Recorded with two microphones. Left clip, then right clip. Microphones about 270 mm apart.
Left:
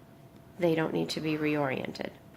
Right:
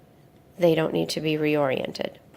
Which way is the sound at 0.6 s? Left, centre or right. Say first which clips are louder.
Right 7 dB; right.